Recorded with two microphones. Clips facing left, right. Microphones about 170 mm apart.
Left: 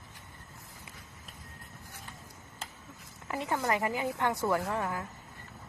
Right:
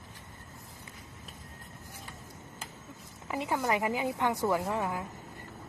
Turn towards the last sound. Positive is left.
turn(degrees=-15)  # may be behind; listen again after turning